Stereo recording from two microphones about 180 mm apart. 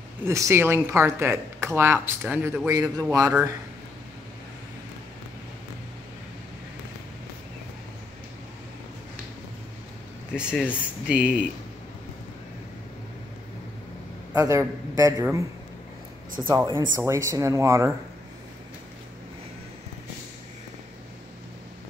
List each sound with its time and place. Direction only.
0.2 s a man's voice: 15° right (ahead or behind)
10.3 s speech: 5° right (ahead or behind)
14.3 s speech: 15° right (ahead or behind)
16.4 s speech: 15° right (ahead or behind)